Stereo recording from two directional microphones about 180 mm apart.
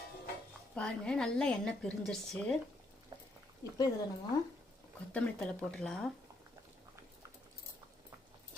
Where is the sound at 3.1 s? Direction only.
25° right (ahead or behind).